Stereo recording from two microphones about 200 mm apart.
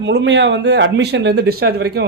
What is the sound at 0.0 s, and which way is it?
Speech, 60° right (ahead or behind).